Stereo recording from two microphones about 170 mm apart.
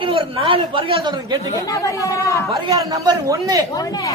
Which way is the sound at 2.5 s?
20° right (ahead or behind).